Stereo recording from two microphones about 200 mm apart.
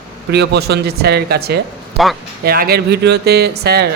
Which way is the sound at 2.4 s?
50° right (ahead or behind).